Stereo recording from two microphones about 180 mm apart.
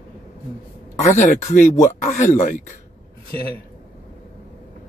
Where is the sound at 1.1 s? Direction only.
45° left (ahead or behind).